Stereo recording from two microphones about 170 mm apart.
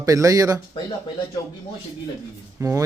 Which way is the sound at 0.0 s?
20° right (ahead or behind).